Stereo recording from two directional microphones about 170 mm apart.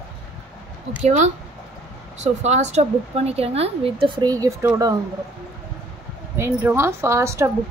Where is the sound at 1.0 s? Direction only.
45° right (ahead or behind); by 4.7 s 20° right (ahead or behind).